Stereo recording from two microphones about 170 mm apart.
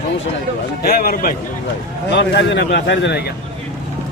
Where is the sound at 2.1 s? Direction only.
90° left.